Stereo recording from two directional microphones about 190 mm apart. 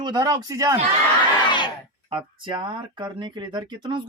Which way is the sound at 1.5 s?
25° left (ahead or behind).